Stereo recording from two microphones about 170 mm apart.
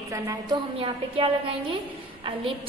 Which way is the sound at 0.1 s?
20° right (ahead or behind).